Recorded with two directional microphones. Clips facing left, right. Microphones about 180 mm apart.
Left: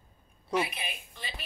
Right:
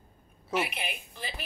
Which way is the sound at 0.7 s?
65° right (ahead or behind).